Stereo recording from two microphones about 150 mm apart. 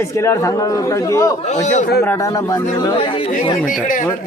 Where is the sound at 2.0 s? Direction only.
20° left (ahead or behind).